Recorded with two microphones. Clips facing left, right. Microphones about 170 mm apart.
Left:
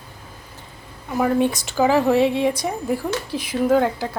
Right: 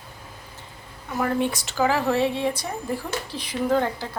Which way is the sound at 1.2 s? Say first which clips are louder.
Left 5 dB; 15° left (ahead or behind).